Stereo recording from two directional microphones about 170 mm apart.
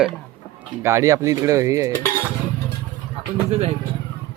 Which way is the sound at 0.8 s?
20° right (ahead or behind).